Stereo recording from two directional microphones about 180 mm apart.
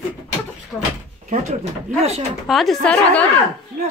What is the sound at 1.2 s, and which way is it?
Speech, 40° right (ahead or behind).